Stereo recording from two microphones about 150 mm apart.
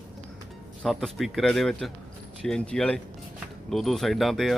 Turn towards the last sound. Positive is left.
turn(degrees=0)  # may be behind; listen again after turning